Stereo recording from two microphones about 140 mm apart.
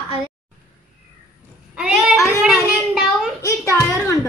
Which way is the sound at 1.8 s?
5° right (ahead or behind).